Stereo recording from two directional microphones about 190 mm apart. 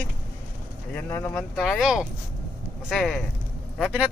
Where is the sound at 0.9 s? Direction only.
10° left (ahead or behind).